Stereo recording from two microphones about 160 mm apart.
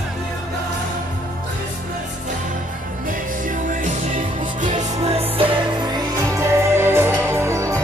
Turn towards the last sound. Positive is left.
turn(degrees=-20)  # may be behind; listen again after turning